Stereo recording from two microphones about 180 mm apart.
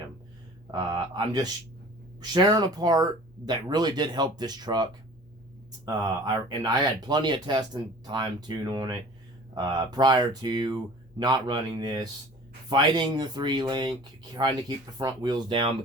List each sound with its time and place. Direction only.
0.7 s speech: 25° right (ahead or behind)